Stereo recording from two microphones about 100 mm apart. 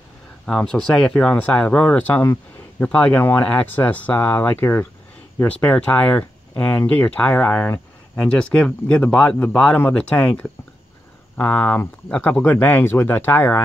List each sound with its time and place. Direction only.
0.7 s speech: 5° left (ahead or behind)